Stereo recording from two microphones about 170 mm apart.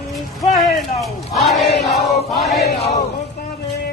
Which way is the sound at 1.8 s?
Centre (ahead or behind).